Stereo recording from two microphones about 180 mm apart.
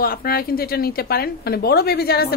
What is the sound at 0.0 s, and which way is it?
A woman's voice, 55° left (ahead or behind).